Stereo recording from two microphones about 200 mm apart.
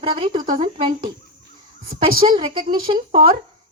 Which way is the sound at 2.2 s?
30° right (ahead or behind).